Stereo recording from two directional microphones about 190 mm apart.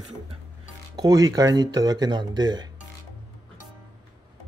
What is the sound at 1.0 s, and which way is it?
Speech, 20° right (ahead or behind).